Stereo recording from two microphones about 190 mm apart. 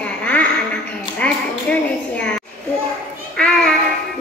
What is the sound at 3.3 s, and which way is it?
Child singing, 5° left (ahead or behind).